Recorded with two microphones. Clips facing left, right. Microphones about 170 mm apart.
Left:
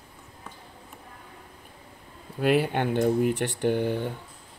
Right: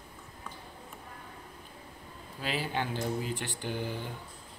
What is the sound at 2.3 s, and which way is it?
Speech, 60° left (ahead or behind).